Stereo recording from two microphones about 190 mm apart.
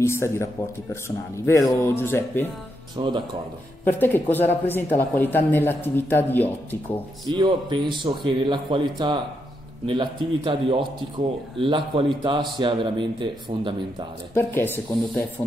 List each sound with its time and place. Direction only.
0.0 s speech: 15° left (ahead or behind)
3.0 s a man's voice: 25° right (ahead or behind)
3.8 s speech: 10° left (ahead or behind)
7.2 s a man's voice: 25° right (ahead or behind)
14.3 s speech: 10° left (ahead or behind)